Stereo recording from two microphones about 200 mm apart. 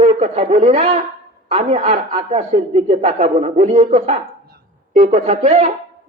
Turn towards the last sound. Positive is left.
turn(degrees=-35)  # may be behind; listen again after turning